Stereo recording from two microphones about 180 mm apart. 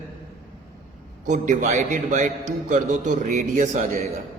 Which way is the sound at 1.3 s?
40° right (ahead or behind).